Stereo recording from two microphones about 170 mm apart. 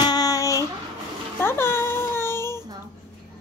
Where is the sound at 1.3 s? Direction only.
15° left (ahead or behind).